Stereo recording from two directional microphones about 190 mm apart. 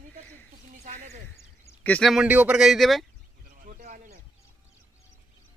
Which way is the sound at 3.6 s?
45° right (ahead or behind).